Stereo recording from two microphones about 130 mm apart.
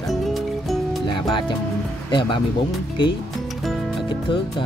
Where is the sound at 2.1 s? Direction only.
40° left (ahead or behind).